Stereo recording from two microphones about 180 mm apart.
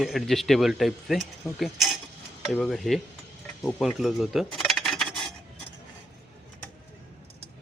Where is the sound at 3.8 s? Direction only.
Centre (ahead or behind).